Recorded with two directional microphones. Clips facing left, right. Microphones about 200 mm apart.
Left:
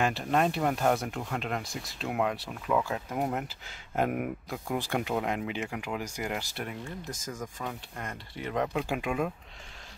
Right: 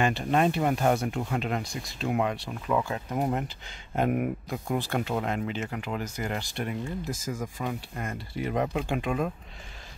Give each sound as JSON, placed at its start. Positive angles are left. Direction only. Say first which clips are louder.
{"t": 0.0, "sound": "speech", "louder": "right 2 dB", "side_deg": 0}
{"t": 4.7, "sound": "speech", "louder": "right 1 dB", "side_deg": 10}
{"t": 8.8, "sound": "speech", "louder": "right 2 dB", "side_deg": 5}